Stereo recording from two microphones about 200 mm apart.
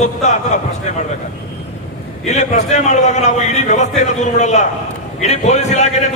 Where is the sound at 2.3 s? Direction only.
35° left (ahead or behind).